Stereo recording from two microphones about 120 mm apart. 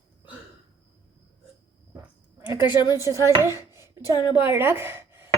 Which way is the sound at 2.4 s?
15° right (ahead or behind).